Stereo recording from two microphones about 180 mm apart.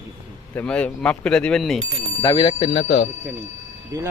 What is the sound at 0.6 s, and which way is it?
Speech, 10° left (ahead or behind).